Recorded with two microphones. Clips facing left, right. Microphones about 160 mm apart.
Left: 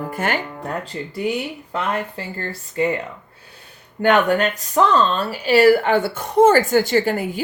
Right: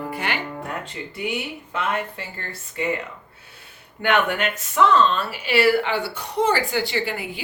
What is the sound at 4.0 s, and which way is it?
Speech, 40° left (ahead or behind).